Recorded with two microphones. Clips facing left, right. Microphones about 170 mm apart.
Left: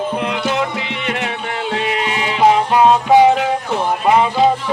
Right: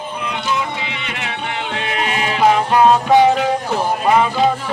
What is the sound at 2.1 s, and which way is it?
Music, 25° left (ahead or behind).